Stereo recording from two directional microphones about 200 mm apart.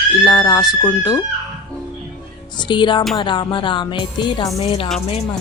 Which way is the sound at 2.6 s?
25° left (ahead or behind).